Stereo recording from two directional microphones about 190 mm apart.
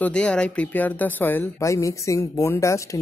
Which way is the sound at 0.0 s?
5° left (ahead or behind).